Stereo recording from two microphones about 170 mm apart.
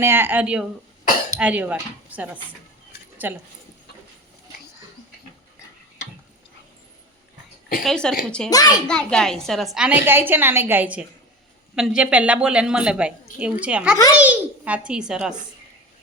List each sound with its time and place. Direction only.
0.0 s a woman's voice: 15° right (ahead or behind)
7.9 s a woman's voice: 5° left (ahead or behind)
8.4 s a child's voice: 20° left (ahead or behind)
8.9 s a woman's voice: 5° left (ahead or behind)